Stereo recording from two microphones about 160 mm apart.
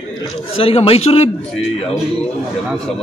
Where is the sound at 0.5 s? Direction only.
35° left (ahead or behind).